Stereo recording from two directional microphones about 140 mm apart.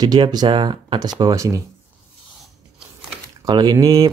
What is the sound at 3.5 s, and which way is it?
Speech, 30° right (ahead or behind).